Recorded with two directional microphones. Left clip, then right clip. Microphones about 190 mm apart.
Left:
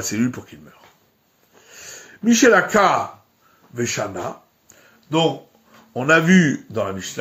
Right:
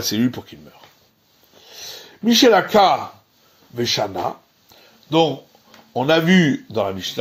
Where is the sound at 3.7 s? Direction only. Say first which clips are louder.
Right 3 dB; 30° right (ahead or behind).